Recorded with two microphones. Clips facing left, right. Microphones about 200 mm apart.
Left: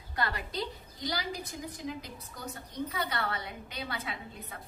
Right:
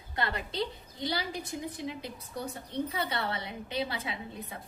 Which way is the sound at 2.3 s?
30° right (ahead or behind).